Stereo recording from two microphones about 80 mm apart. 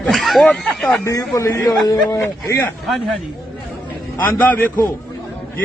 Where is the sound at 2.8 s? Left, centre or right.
Centre.